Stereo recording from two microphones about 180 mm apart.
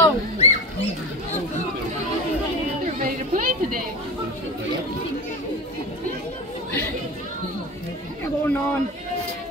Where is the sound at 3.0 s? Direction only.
50° right (ahead or behind).